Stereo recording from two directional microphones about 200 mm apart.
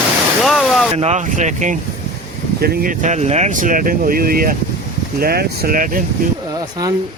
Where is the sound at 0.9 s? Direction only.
35° right (ahead or behind).